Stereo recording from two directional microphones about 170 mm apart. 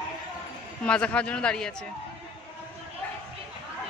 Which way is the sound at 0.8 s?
10° left (ahead or behind).